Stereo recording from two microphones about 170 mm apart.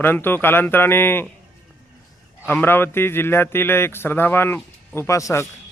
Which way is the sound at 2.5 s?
10° left (ahead or behind).